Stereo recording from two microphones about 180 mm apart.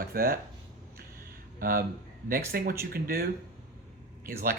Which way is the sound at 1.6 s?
55° right (ahead or behind).